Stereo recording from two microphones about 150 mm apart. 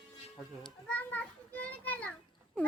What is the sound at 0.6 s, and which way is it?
A child's voice, 10° left (ahead or behind).